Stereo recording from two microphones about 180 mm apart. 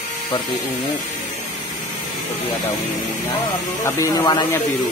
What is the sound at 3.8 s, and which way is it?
Speech, 15° left (ahead or behind).